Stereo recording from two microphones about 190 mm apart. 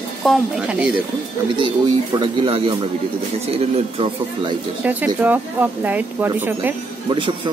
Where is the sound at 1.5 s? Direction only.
25° right (ahead or behind).